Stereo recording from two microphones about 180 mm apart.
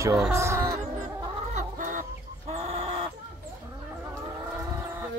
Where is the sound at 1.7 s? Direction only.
45° right (ahead or behind).